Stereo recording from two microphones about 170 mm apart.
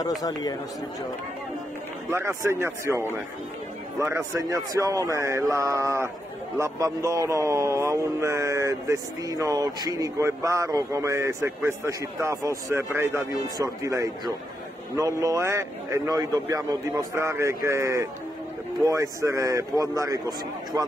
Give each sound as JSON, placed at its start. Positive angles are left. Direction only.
{"t": 0.2, "sound": "speech", "side_deg": 20}
{"t": 2.0, "sound": "a man's voice", "side_deg": -15}
{"t": 4.0, "sound": "a man's voice", "side_deg": -20}